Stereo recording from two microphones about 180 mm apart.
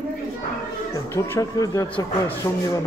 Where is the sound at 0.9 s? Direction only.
15° left (ahead or behind).